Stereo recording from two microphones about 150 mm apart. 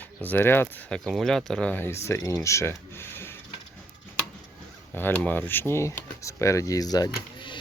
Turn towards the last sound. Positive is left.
turn(degrees=30)  # may be behind; listen again after turning